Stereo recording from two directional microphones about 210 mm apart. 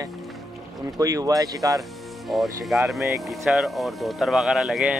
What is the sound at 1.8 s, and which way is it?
Speech, centre (ahead or behind).